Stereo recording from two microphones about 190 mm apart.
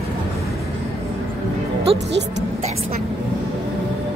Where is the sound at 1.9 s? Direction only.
30° right (ahead or behind).